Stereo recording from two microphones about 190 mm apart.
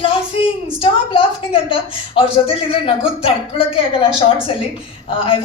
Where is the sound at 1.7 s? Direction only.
30° left (ahead or behind).